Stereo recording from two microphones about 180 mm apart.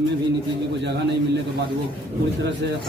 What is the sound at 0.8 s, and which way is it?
Speech, 75° right (ahead or behind).